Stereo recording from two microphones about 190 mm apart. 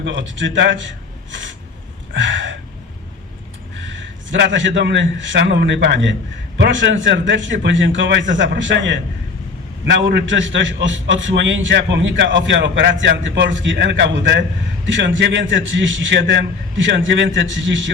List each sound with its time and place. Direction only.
0.0 s a man's voice: 80° right
2.1 s a sound: 80° right
3.8 s a man's voice: 75° right (ahead or behind)